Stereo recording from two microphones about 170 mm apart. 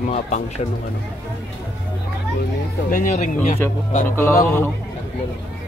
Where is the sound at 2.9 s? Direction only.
50° left (ahead or behind).